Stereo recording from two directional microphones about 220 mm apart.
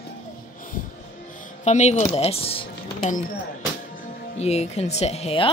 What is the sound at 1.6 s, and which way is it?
Speech, 30° left (ahead or behind).